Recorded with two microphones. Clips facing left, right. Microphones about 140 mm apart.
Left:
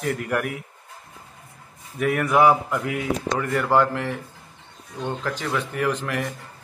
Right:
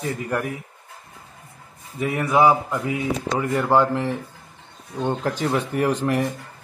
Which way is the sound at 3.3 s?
20° right (ahead or behind).